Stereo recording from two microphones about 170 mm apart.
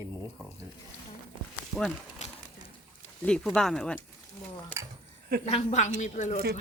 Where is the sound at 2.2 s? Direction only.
45° left (ahead or behind).